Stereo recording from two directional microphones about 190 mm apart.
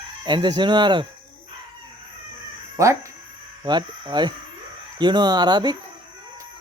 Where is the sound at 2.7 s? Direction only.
15° right (ahead or behind).